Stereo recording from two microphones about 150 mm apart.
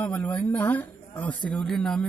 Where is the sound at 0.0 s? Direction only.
10° left (ahead or behind).